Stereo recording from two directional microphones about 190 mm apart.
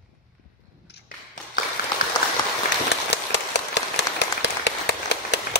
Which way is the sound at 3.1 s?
65° left (ahead or behind).